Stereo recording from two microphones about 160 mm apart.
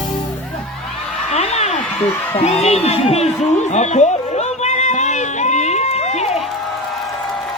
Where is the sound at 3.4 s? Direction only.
45° left (ahead or behind).